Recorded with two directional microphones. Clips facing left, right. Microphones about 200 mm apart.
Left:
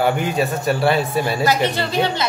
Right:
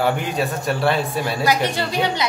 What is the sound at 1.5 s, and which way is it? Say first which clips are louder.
Speech: left 1 dB; 10° right (ahead or behind).